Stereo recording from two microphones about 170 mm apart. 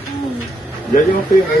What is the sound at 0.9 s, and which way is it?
Speech, 50° left (ahead or behind).